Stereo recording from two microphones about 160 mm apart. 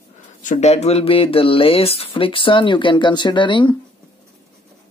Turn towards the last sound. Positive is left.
turn(degrees=30)  # may be behind; listen again after turning